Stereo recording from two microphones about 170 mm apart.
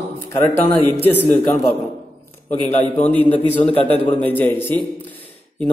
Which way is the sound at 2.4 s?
35° left (ahead or behind).